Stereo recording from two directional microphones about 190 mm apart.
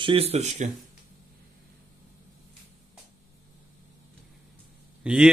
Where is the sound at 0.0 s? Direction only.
30° right (ahead or behind).